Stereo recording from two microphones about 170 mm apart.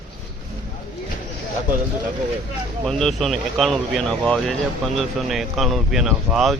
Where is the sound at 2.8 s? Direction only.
Centre (ahead or behind).